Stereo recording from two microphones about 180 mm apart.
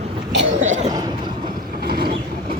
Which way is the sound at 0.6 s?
40° right (ahead or behind).